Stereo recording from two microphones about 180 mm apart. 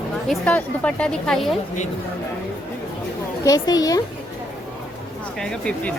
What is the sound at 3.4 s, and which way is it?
Speech, 20° left (ahead or behind).